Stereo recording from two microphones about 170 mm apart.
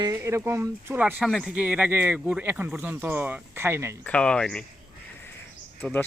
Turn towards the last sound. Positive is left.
turn(degrees=10)  # may be behind; listen again after turning